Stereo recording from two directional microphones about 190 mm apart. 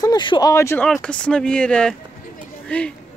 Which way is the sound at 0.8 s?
5° left (ahead or behind).